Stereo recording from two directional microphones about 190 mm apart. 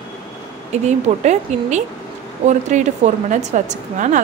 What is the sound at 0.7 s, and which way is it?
A woman's voice, 35° right (ahead or behind).